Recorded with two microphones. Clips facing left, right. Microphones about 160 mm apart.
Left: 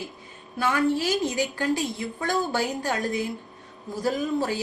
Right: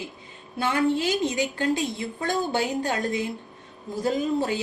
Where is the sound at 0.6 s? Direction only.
25° right (ahead or behind).